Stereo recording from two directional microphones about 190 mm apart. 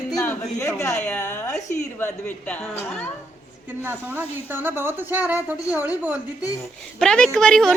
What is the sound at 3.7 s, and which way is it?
A woman's voice, 10° right (ahead or behind).